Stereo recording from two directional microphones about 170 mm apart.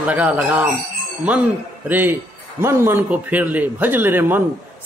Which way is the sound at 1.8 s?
10° right (ahead or behind).